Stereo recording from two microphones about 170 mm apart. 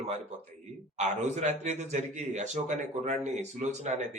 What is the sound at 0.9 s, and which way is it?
A man's voice, 40° right (ahead or behind).